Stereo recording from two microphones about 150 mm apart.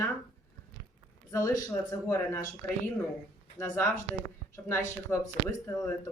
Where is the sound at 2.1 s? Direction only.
15° left (ahead or behind).